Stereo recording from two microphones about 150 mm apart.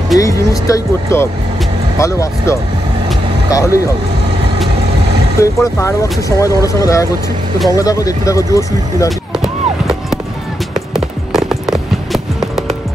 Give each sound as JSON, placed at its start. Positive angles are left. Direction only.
{"t": 0.2, "sound": "speech", "side_deg": 20}
{"t": 5.4, "sound": "speech", "side_deg": 20}
{"t": 9.4, "sound": "a sound", "side_deg": 0}
{"t": 10.9, "sound": "music", "side_deg": 0}